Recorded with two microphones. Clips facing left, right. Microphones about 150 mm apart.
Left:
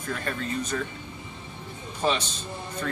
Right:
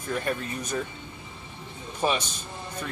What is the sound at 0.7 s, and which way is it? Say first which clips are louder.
Speech: right 3 dB; 15° right (ahead or behind).